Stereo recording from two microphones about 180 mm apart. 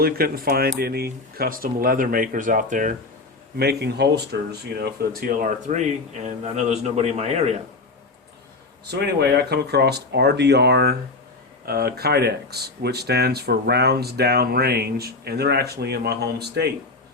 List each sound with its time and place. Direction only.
0.0 s speech: 55° right (ahead or behind)
3.6 s speech: 65° right (ahead or behind)
4.8 s speech: 50° right (ahead or behind)
8.9 s speech: 65° right (ahead or behind)